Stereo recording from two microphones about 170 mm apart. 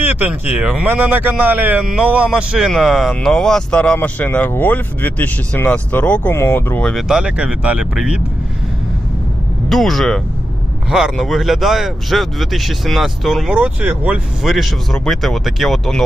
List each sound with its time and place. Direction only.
0.0 s speech: 10° right (ahead or behind)
9.6 s speech: centre (ahead or behind)